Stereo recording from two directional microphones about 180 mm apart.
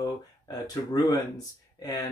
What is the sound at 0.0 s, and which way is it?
Speech, 20° left (ahead or behind).